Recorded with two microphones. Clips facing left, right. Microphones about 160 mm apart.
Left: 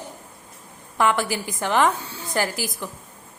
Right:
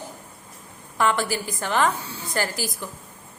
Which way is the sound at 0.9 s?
15° left (ahead or behind).